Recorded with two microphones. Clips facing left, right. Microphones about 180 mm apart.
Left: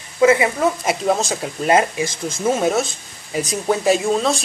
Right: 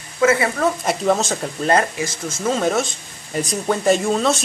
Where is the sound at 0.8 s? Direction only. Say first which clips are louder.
Even; centre (ahead or behind).